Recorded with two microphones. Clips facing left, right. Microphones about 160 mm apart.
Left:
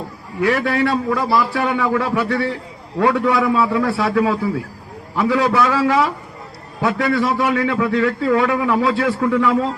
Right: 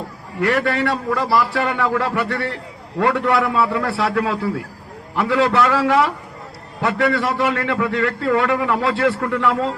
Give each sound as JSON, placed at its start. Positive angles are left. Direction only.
{"t": 0.4, "sound": "a man's voice", "side_deg": 5}